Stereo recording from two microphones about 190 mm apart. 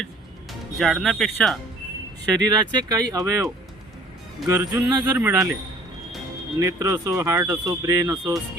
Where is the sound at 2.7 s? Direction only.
20° right (ahead or behind).